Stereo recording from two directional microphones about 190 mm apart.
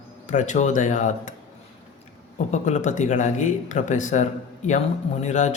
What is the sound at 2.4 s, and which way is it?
Speech, 40° left (ahead or behind).